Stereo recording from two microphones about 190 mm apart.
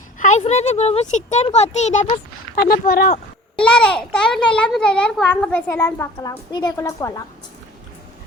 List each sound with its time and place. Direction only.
0.2 s speech: 40° left (ahead or behind)
2.6 s speech: 50° left (ahead or behind)
3.5 s a child's voice: 5° left (ahead or behind)